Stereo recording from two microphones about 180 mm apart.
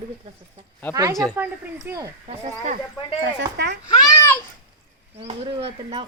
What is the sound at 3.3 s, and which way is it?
Speech, 70° right (ahead or behind).